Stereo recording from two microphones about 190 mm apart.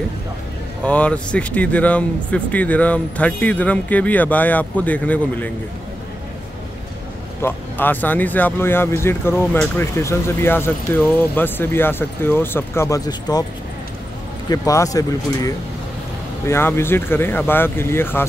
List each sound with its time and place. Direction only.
0.8 s speech: 5° left (ahead or behind)
7.4 s speech: 10° left (ahead or behind)
14.5 s speech: 15° left (ahead or behind)